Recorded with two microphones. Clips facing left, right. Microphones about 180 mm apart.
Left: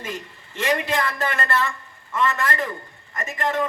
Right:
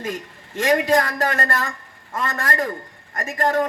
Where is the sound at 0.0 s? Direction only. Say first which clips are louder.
Right 4 dB; 45° right (ahead or behind).